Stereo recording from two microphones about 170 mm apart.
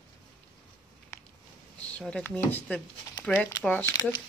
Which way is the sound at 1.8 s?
5° left (ahead or behind).